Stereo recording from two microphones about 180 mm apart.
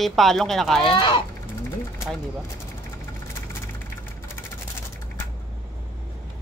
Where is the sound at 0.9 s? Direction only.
25° left (ahead or behind).